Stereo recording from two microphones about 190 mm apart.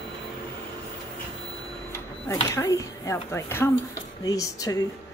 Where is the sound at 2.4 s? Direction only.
15° left (ahead or behind).